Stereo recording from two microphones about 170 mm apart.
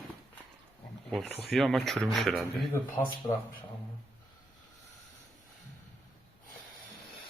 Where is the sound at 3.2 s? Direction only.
25° left (ahead or behind).